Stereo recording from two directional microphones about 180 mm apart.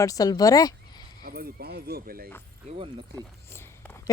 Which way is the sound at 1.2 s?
60° right (ahead or behind).